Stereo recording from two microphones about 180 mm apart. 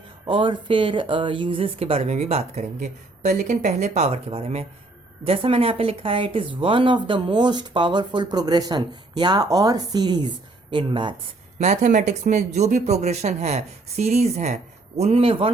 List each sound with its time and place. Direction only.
0.3 s speech: 30° right (ahead or behind)
11.6 s speech: 40° right (ahead or behind)